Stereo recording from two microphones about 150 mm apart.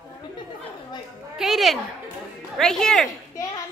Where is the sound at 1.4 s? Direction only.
Centre (ahead or behind).